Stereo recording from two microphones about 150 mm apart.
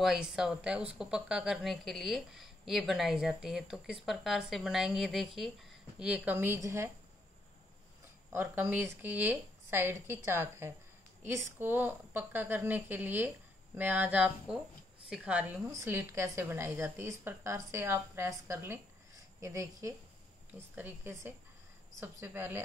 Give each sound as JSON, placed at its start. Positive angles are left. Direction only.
{"t": 0.0, "sound": "speech", "side_deg": -5}
{"t": 8.3, "sound": "a woman's voice", "side_deg": -15}